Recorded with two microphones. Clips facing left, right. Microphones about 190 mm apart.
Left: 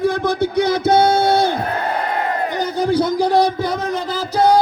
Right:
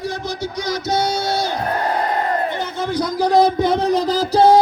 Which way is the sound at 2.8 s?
30° left (ahead or behind).